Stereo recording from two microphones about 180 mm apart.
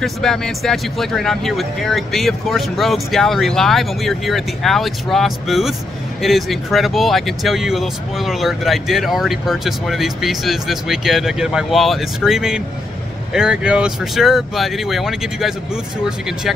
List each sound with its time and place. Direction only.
0.0 s speech: 5° left (ahead or behind)